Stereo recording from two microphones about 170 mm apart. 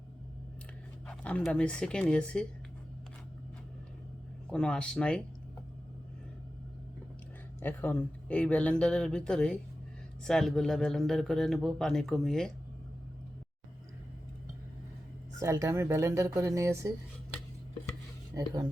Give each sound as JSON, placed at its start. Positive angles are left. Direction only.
{"t": 1.0, "sound": "a man's voice", "side_deg": 10}
{"t": 4.4, "sound": "a man's voice", "side_deg": 5}
{"t": 7.6, "sound": "a man's voice", "side_deg": 10}
{"t": 15.4, "sound": "speech", "side_deg": -20}
{"t": 18.3, "sound": "speech", "side_deg": -20}